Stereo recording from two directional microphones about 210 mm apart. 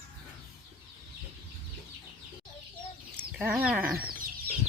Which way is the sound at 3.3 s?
5° right (ahead or behind).